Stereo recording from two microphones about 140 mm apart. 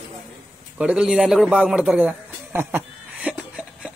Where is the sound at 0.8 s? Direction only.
5° right (ahead or behind).